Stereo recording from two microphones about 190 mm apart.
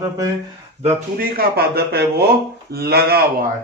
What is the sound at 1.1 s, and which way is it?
Speech, 55° right (ahead or behind).